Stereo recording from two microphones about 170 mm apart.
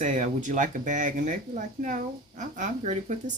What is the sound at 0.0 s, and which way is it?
Speech, 45° right (ahead or behind).